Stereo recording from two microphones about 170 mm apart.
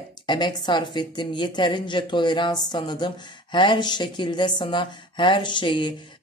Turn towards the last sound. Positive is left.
turn(degrees=30)  # may be behind; listen again after turning